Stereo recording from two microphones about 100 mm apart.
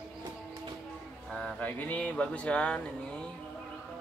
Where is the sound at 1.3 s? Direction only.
15° left (ahead or behind).